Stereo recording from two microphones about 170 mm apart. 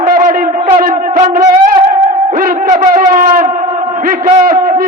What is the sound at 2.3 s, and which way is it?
A man's voice, 55° right (ahead or behind).